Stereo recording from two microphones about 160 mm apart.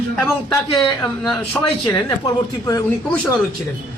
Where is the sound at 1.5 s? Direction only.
20° left (ahead or behind).